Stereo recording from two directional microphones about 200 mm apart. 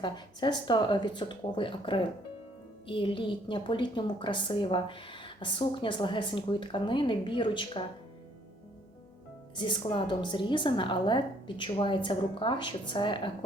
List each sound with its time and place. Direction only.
0.0 s a woman's voice: 20° left (ahead or behind)
9.6 s a woman's voice: 25° left (ahead or behind)